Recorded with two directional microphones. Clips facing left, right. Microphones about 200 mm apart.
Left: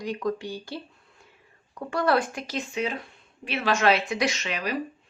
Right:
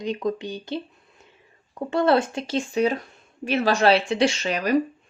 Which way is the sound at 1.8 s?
25° right (ahead or behind).